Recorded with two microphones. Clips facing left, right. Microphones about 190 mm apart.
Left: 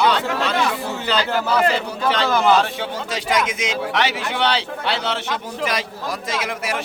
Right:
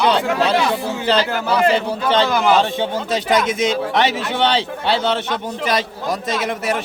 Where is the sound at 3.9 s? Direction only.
30° right (ahead or behind).